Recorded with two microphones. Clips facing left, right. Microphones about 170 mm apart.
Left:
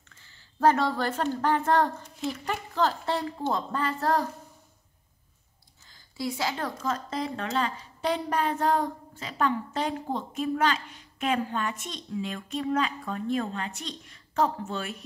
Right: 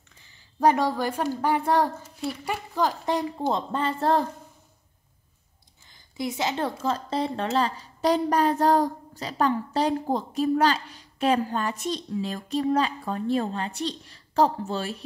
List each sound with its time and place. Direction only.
0.1 s speech: 15° right (ahead or behind)
5.9 s a woman's voice: 20° right (ahead or behind)